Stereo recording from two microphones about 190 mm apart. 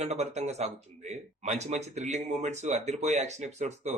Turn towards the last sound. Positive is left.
turn(degrees=-35)  # may be behind; listen again after turning